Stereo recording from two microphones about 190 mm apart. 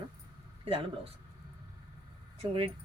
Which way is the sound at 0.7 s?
30° right (ahead or behind).